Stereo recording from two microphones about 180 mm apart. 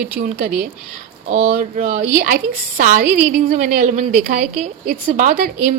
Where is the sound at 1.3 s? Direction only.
35° right (ahead or behind).